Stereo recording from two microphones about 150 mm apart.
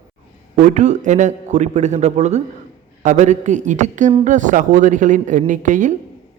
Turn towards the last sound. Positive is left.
turn(degrees=-55)  # may be behind; listen again after turning